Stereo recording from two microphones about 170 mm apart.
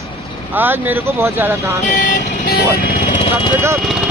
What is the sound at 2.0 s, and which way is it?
Speech, 55° left (ahead or behind).